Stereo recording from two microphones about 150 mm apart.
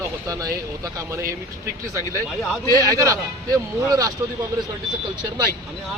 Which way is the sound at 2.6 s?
25° right (ahead or behind).